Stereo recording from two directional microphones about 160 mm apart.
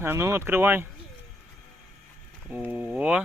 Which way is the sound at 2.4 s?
10° right (ahead or behind).